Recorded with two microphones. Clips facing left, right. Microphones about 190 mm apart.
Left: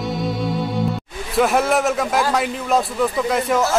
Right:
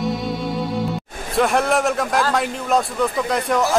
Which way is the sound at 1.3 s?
Centre (ahead or behind).